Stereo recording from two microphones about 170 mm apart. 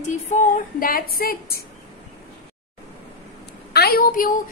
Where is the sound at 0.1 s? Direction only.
45° left (ahead or behind); by 1.6 s 60° left (ahead or behind).